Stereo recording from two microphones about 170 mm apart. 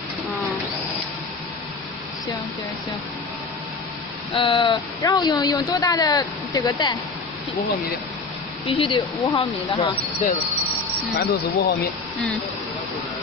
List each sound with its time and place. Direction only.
4.4 s speech: 30° left (ahead or behind)
8.6 s speech: 30° left (ahead or behind)
11.1 s speech: 65° left (ahead or behind)